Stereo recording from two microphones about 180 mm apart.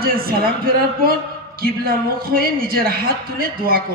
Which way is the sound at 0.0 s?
55° right (ahead or behind).